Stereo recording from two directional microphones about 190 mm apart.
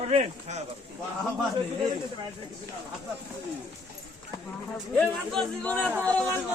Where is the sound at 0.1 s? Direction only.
35° right (ahead or behind).